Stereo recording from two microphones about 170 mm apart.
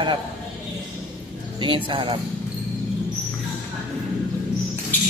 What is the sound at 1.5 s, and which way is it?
Speech, 30° right (ahead or behind).